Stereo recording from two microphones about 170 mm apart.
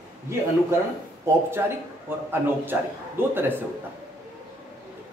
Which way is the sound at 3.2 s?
10° right (ahead or behind).